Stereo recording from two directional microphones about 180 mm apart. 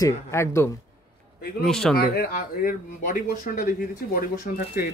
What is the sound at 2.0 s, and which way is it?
Speech, 55° left (ahead or behind).